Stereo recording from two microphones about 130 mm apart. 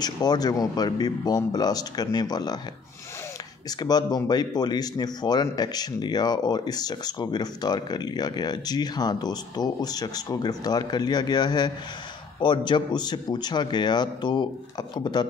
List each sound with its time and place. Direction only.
0.0 s a man's voice: 30° left (ahead or behind)
3.8 s a man's voice: 30° left (ahead or behind)